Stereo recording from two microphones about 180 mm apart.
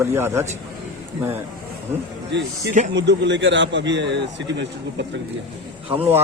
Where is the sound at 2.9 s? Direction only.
80° right.